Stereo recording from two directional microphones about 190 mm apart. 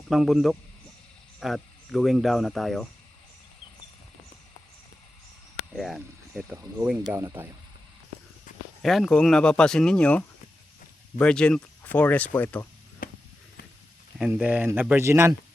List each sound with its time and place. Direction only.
0.1 s speech: centre (ahead or behind)
5.7 s speech: centre (ahead or behind)
8.8 s speech: centre (ahead or behind)
13.0 s a sound: 50° left (ahead or behind)
14.2 s speech: 5° right (ahead or behind)